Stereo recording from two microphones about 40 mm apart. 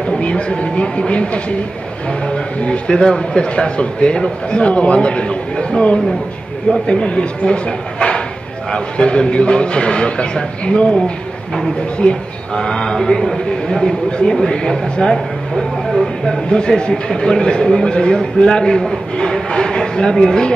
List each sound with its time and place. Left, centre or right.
0.2 s speech: left
12.0 s speech: left
12.6 s a man's voice: centre
16.3 s a man's voice: centre
19.1 s a sound: centre